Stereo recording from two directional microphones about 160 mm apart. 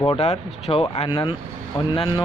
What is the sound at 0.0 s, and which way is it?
Speech, 35° left (ahead or behind).